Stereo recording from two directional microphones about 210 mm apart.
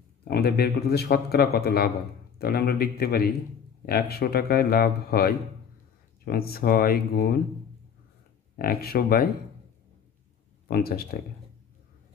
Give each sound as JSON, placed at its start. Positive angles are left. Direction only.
{"t": 0.3, "sound": "a man's voice", "side_deg": 50}
{"t": 8.5, "sound": "a man's voice", "side_deg": 45}
{"t": 10.7, "sound": "a man's voice", "side_deg": 45}